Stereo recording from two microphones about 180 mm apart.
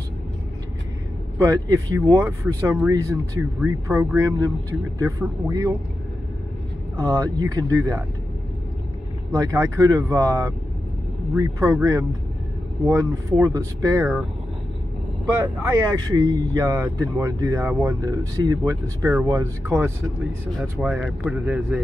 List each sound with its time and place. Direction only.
1.4 s speech: 20° right (ahead or behind)
7.0 s speech: 20° right (ahead or behind)
9.3 s speech: 20° right (ahead or behind)
15.4 s speech: 20° right (ahead or behind)
20.5 s speech: centre (ahead or behind)